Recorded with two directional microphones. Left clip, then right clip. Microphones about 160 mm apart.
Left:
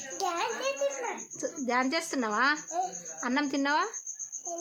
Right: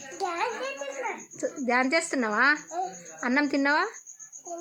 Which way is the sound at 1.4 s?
25° right (ahead or behind).